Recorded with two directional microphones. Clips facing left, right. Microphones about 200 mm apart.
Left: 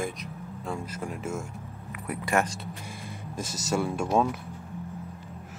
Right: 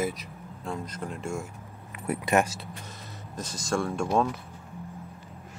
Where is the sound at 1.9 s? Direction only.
25° right (ahead or behind).